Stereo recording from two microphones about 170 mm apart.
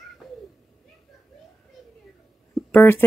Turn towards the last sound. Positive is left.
turn(degrees=15)  # may be behind; listen again after turning